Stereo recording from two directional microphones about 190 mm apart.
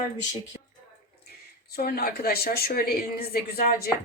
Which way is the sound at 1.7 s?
55° left (ahead or behind).